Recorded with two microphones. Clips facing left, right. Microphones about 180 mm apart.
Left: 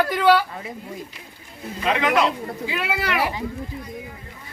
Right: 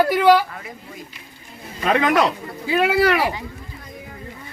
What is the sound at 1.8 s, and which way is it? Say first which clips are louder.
Speech: right 3 dB; 45° right (ahead or behind).